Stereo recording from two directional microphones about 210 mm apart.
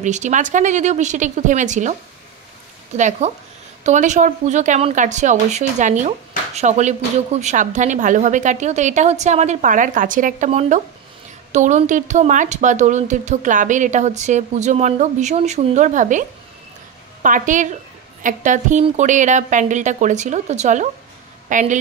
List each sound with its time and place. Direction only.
0.0 s a woman's voice: 35° right (ahead or behind)
3.0 s a woman's voice: 35° right (ahead or behind)